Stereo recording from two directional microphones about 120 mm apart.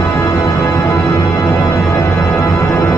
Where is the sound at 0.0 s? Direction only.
25° left (ahead or behind).